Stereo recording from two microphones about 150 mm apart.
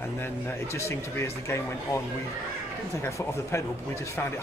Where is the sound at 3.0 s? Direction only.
15° left (ahead or behind).